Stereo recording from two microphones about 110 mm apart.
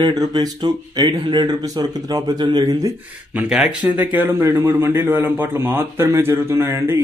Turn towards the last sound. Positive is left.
turn(degrees=-25)  # may be behind; listen again after turning